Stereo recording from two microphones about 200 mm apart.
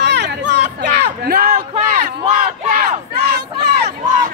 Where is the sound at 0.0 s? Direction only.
60° right (ahead or behind); by 2.1 s 45° right (ahead or behind).